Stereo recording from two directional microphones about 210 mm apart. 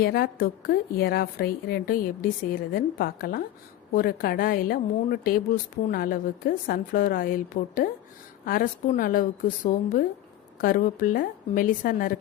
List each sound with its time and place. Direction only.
0.0 s a woman's voice: 45° left (ahead or behind)